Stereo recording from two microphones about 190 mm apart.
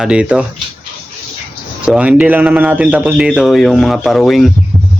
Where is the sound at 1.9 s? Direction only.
5° right (ahead or behind).